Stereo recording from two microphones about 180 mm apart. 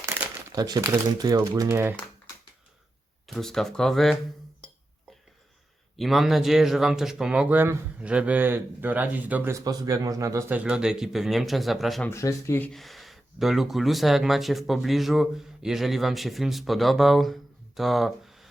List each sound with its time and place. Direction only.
0.5 s speech: 20° right (ahead or behind)
3.2 s speech: centre (ahead or behind)
6.0 s speech: centre (ahead or behind)
12.0 s speech: 15° left (ahead or behind); by 18.4 s centre (ahead or behind)